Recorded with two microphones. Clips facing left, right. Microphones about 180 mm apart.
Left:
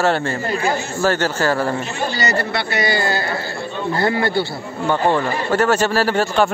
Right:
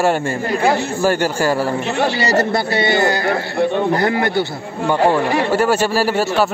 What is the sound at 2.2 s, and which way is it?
Speech, 40° right (ahead or behind).